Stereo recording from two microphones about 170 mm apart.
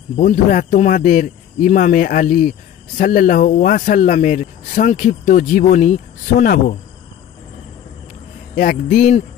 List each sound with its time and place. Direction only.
0.2 s speech: 50° left (ahead or behind)
8.5 s speech: 50° left (ahead or behind)